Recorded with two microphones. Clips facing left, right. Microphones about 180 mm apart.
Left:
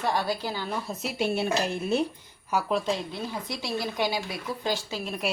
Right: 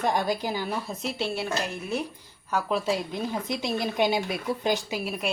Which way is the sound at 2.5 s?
10° left (ahead or behind).